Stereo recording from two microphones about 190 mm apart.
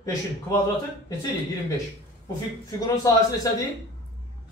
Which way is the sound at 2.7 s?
15° left (ahead or behind).